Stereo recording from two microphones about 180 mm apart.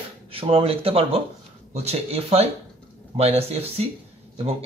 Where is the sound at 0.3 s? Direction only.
30° right (ahead or behind).